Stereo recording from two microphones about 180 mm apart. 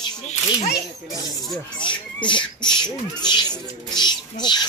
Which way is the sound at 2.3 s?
25° left (ahead or behind).